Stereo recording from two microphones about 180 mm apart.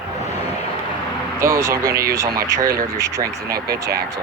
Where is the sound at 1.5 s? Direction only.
15° right (ahead or behind).